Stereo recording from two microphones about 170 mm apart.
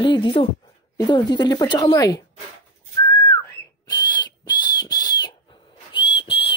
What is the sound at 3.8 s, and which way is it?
Owl, 25° left (ahead or behind).